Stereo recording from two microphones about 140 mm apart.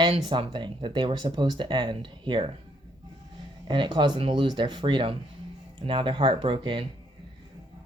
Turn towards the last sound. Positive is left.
turn(degrees=-35)  # may be behind; listen again after turning